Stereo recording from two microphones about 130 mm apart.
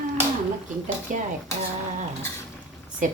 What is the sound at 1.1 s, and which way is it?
Speech, 90° right.